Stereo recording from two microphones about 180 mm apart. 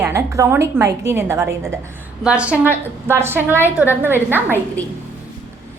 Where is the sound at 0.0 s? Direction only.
15° right (ahead or behind).